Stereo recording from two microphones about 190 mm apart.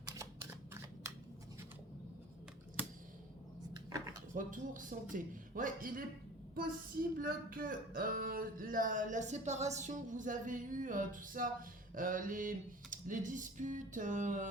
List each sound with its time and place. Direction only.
3.8 s a sound: 20° right (ahead or behind)
4.4 s speech: 45° right (ahead or behind)
7.2 s speech: 50° right (ahead or behind)